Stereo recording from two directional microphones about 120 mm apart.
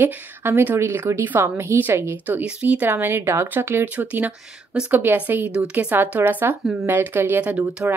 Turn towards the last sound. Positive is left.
turn(degrees=-15)  # may be behind; listen again after turning